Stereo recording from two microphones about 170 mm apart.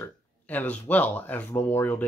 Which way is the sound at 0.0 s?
10° left (ahead or behind).